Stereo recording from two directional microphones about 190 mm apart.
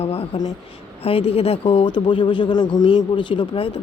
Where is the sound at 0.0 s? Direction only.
30° left (ahead or behind).